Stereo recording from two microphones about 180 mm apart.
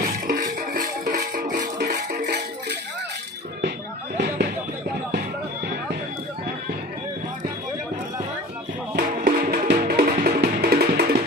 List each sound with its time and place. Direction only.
0.0 s music: 50° right (ahead or behind)
2.0 s music: 70° right (ahead or behind)
8.9 s music: 55° right (ahead or behind)